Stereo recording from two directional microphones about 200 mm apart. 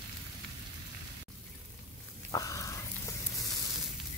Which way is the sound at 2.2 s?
15° left (ahead or behind).